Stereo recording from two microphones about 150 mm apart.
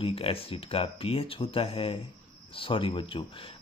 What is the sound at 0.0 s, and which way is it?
Speech, 40° left (ahead or behind).